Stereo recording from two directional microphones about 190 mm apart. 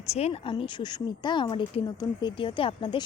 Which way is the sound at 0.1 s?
35° left (ahead or behind).